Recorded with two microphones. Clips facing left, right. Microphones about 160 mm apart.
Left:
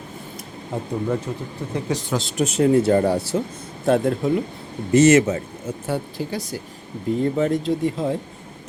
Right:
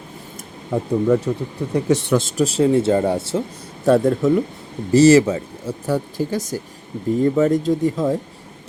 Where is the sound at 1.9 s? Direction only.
75° right (ahead or behind).